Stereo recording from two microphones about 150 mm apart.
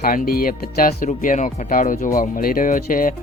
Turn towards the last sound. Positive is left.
turn(degrees=65)  # may be behind; listen again after turning